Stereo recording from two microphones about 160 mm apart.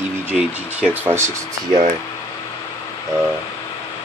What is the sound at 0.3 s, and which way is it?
Speech, 10° right (ahead or behind).